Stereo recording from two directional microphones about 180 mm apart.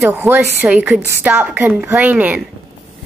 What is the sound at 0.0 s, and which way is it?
A woman's voice, 10° right (ahead or behind).